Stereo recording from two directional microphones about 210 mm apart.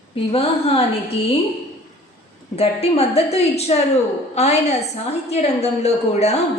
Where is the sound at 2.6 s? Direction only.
30° left (ahead or behind).